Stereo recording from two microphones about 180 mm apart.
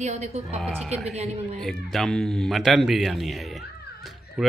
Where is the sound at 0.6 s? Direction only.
Centre (ahead or behind).